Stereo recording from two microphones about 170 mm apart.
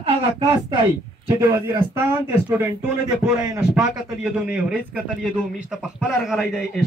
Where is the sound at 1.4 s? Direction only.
15° right (ahead or behind).